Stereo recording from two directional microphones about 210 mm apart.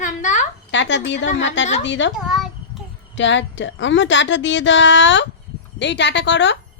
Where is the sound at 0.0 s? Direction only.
35° left (ahead or behind).